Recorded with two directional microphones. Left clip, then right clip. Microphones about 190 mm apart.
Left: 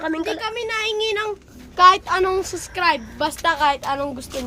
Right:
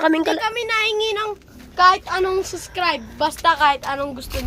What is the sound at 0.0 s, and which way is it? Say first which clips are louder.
Speech: right 6 dB; 35° right (ahead or behind).